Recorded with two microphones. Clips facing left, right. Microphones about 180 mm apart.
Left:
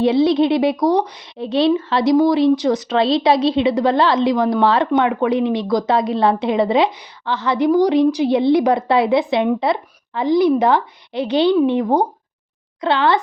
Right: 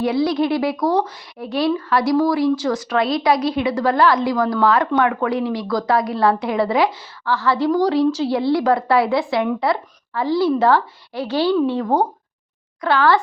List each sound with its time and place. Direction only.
0.0 s a woman's voice: 25° left (ahead or behind)